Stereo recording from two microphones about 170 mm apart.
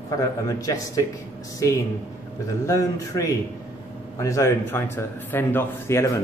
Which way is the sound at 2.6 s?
20° left (ahead or behind).